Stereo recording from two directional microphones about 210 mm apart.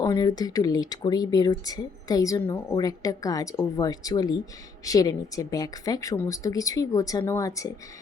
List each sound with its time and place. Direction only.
0.0 s speech: 15° left (ahead or behind)